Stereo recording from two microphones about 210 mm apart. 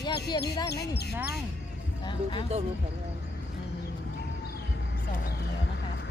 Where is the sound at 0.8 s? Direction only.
50° left (ahead or behind).